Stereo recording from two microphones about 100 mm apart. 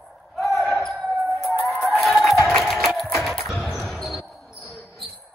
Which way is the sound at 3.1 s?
Centre (ahead or behind).